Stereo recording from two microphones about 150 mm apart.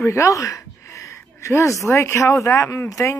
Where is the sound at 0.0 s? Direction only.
20° left (ahead or behind).